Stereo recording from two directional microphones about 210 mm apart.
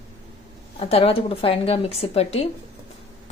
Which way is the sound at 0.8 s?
30° left (ahead or behind).